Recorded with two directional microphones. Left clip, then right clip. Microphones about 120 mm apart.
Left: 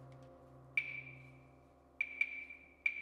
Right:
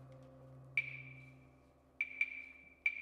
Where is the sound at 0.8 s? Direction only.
5° right (ahead or behind).